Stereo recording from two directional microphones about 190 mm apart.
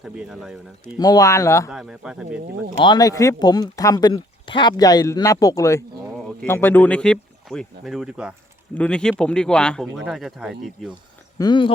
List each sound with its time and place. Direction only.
0.0 s speech: 5° right (ahead or behind)
0.9 s speech: 20° left (ahead or behind)
1.7 s speech: 5° right (ahead or behind)
2.7 s speech: 25° left (ahead or behind); by 10.9 s centre (ahead or behind)
11.3 s speech: 25° left (ahead or behind)